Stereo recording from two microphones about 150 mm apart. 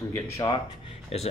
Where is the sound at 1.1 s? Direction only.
45° left (ahead or behind).